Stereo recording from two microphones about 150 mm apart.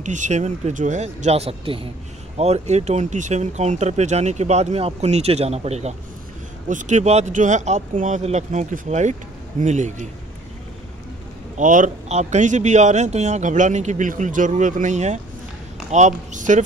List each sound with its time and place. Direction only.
0.0 s a man's voice: 55° right (ahead or behind)
11.5 s a man's voice: 60° right (ahead or behind)